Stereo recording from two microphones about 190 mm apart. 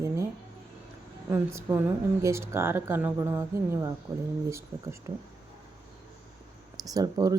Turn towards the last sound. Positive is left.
turn(degrees=-20)  # may be behind; listen again after turning